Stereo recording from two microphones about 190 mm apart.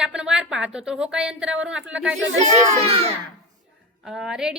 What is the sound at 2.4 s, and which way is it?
Speech, 30° right (ahead or behind).